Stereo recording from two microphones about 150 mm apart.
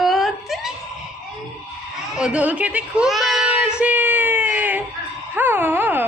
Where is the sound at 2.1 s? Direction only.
5° right (ahead or behind).